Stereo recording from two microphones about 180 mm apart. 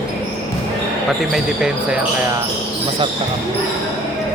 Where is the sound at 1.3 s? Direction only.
5° right (ahead or behind).